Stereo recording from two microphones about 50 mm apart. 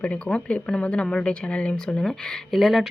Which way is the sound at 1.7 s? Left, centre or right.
Centre.